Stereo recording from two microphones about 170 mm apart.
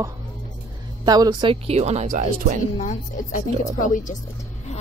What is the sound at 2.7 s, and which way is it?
A woman's voice, 50° left (ahead or behind).